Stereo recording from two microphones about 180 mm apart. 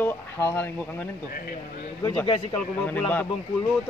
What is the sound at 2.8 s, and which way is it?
Speech, 10° left (ahead or behind).